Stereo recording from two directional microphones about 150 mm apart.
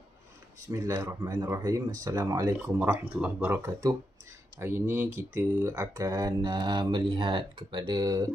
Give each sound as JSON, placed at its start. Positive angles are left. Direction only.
{"t": 0.6, "sound": "speech", "side_deg": -20}